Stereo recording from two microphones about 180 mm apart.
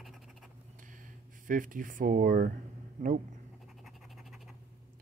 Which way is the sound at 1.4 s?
50° right (ahead or behind).